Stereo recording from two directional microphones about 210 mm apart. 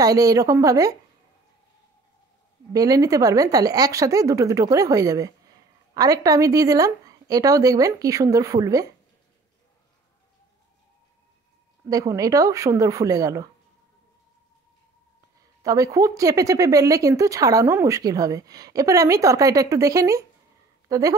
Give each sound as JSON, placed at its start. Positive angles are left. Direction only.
{"t": 0.0, "sound": "a woman's voice", "side_deg": -15}
{"t": 2.7, "sound": "a woman's voice", "side_deg": -15}
{"t": 11.9, "sound": "a woman's voice", "side_deg": -15}
{"t": 15.6, "sound": "a woman's voice", "side_deg": -15}